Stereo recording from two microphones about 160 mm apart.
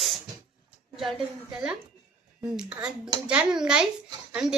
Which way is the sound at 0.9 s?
Centre (ahead or behind).